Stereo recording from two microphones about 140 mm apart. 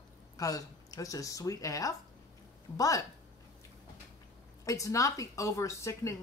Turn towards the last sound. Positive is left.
turn(degrees=20)  # may be behind; listen again after turning